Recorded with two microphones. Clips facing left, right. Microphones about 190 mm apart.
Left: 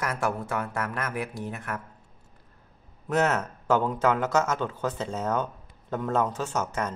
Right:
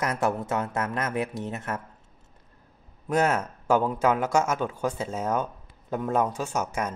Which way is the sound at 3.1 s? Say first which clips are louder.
Right 1 dB; 10° right (ahead or behind).